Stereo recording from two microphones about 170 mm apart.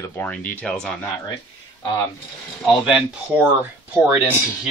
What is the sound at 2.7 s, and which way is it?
Speech, 5° right (ahead or behind).